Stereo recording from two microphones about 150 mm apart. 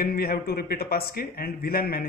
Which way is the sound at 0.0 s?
90° left.